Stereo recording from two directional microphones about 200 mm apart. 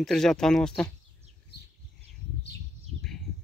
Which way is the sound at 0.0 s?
Centre (ahead or behind).